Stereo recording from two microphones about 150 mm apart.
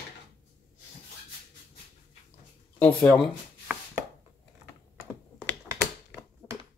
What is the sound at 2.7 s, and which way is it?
Speech, 5° left (ahead or behind).